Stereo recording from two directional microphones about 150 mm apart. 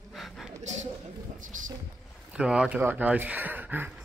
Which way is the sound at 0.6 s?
50° right (ahead or behind).